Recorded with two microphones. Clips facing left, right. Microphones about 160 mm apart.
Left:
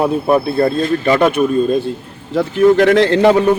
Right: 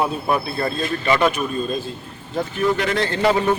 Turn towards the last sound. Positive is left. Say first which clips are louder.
# left 8 dB
turn(degrees=75)  # may be behind; listen again after turning